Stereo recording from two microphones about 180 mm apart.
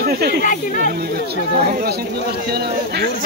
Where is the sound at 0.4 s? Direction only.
50° left (ahead or behind).